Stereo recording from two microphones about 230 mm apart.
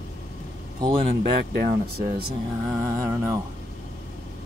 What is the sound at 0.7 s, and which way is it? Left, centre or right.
Speech, centre.